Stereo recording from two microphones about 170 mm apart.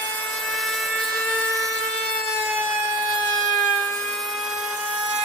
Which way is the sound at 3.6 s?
Centre (ahead or behind).